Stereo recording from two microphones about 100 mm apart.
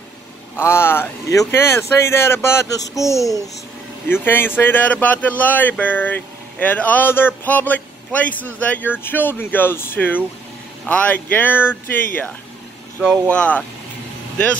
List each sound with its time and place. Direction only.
0.6 s speech: 25° left (ahead or behind)
4.1 s speech: 20° left (ahead or behind)
13.3 s speech: 15° left (ahead or behind)